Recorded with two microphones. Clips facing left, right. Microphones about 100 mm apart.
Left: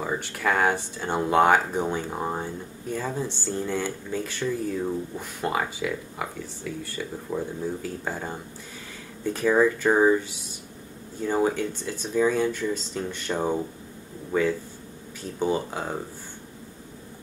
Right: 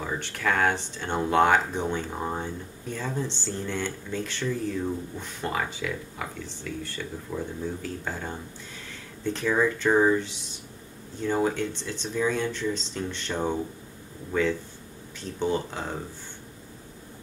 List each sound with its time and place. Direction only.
0.0 s speech: 10° left (ahead or behind)